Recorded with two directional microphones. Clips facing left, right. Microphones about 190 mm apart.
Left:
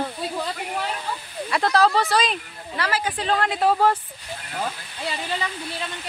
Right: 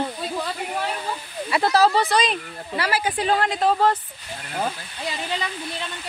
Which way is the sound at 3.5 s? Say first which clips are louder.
Left 3 dB; 10° left (ahead or behind).